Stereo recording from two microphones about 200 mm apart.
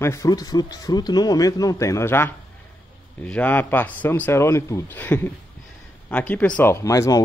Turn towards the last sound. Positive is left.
turn(degrees=15)  # may be behind; listen again after turning